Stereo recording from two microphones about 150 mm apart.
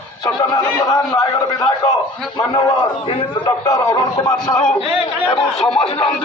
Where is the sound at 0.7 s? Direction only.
20° left (ahead or behind).